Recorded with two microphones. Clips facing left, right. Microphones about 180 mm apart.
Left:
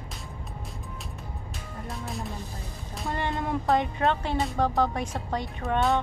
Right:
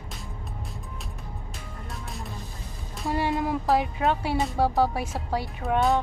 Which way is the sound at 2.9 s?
5° right (ahead or behind).